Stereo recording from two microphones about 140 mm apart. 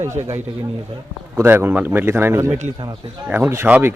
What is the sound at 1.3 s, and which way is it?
A man's voice, 15° right (ahead or behind).